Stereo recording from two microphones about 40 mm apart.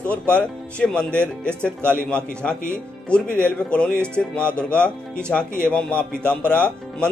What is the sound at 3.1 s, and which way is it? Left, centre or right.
Speech, left.